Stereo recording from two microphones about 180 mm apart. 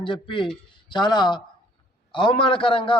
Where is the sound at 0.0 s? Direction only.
30° left (ahead or behind).